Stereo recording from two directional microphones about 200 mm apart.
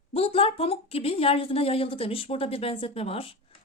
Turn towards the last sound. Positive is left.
turn(degrees=30)  # may be behind; listen again after turning